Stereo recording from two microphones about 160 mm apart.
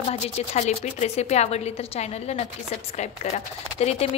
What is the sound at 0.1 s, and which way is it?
A woman's voice, 45° left (ahead or behind).